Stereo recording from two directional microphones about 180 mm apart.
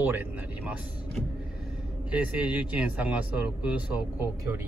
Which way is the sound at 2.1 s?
5° right (ahead or behind).